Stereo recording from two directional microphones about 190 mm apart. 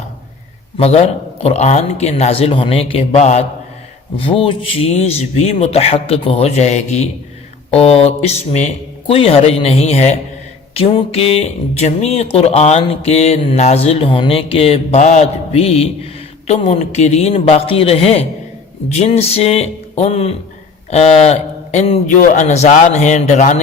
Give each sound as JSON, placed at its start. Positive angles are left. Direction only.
{"t": 0.8, "sound": "speech", "side_deg": 30}